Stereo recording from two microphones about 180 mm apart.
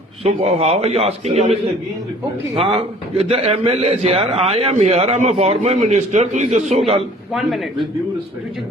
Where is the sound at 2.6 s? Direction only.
35° right (ahead or behind).